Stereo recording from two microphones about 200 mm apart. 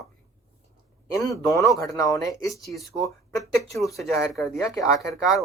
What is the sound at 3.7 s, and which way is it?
Speech, centre (ahead or behind).